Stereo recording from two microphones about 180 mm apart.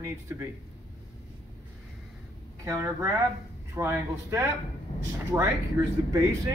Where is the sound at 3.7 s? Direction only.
15° right (ahead or behind).